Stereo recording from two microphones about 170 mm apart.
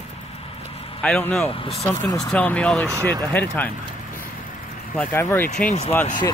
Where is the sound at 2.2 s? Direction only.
5° left (ahead or behind).